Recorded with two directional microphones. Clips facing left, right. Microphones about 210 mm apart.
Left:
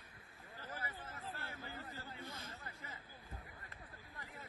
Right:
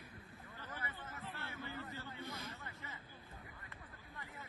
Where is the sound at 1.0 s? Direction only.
30° left (ahead or behind).